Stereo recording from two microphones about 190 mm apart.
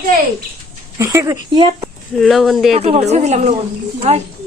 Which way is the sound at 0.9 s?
15° right (ahead or behind).